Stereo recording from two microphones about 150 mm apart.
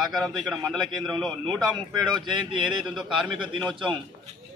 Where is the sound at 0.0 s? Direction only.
Centre (ahead or behind).